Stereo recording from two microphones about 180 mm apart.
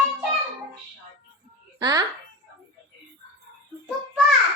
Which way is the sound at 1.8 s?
20° right (ahead or behind).